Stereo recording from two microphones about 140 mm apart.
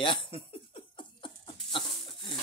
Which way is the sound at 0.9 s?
35° left (ahead or behind).